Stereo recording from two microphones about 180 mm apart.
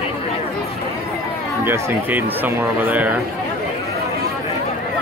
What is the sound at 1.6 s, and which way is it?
Speech, 15° right (ahead or behind).